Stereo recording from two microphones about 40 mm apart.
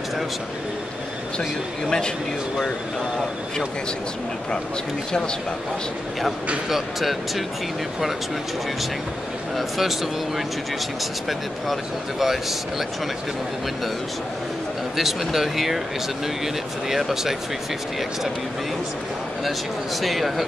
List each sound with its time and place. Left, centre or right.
1.9 s speech: centre
6.7 s speech: centre
9.6 s speech: centre
15.0 s speech: centre
16.9 s speech: centre
20.0 s speech: centre